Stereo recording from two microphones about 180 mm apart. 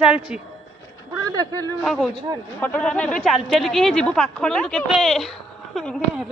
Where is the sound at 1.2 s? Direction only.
20° right (ahead or behind).